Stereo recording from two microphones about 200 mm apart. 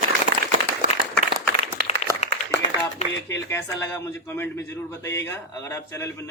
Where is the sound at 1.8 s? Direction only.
55° right (ahead or behind).